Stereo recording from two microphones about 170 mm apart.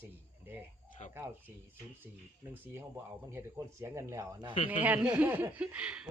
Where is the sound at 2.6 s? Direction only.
15° right (ahead or behind).